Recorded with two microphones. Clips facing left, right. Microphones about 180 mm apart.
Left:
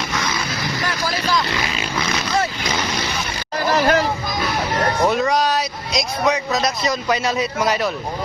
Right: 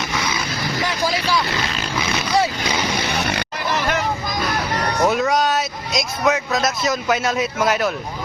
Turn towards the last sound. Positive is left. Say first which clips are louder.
# right 1 dB
turn(degrees=0)  # may be behind; listen again after turning